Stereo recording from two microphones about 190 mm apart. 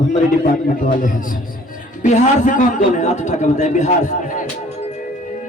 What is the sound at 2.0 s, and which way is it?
A man's voice, 40° left (ahead or behind).